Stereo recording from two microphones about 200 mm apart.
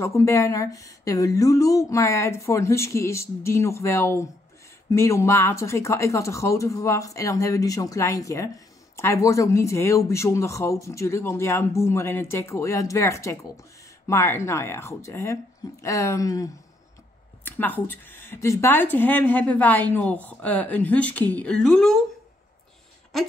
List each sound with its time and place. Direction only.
0.0 s speech: 15° left (ahead or behind)